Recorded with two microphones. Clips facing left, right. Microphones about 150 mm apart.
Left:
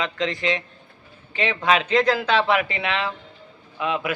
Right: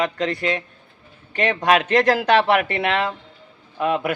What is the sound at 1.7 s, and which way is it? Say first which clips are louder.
A man's voice: right 2 dB; 45° right (ahead or behind).